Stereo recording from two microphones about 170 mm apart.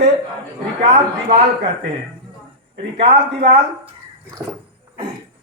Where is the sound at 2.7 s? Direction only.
35° right (ahead or behind).